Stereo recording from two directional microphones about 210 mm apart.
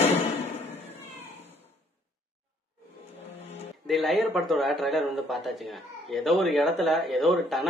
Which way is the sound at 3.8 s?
Centre (ahead or behind).